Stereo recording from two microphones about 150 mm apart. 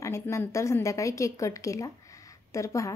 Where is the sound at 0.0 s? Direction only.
20° left (ahead or behind).